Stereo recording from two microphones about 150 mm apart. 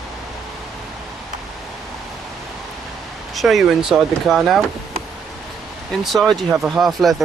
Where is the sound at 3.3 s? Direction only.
Centre (ahead or behind).